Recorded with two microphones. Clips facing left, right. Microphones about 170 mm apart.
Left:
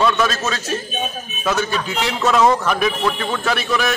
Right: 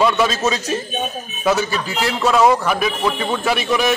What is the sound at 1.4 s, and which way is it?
A man's voice, 10° right (ahead or behind).